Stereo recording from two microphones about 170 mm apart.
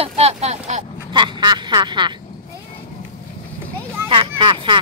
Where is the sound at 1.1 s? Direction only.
25° right (ahead or behind).